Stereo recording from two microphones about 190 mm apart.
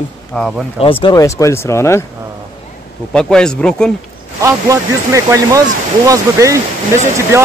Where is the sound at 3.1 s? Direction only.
5° left (ahead or behind).